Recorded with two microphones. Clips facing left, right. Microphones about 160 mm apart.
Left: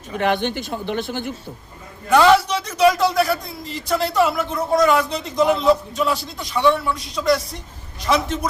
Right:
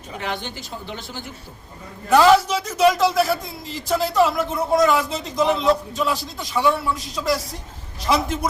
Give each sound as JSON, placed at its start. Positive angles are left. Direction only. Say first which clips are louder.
{"t": 0.2, "sound": "speech", "louder": "left 9 dB", "side_deg": 60}
{"t": 2.0, "sound": "a man's voice", "louder": "even", "side_deg": 0}